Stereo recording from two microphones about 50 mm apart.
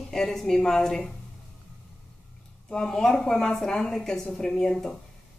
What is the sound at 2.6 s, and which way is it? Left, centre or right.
Speech, centre.